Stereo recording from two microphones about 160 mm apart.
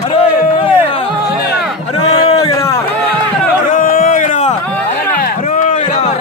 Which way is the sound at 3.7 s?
55° left (ahead or behind).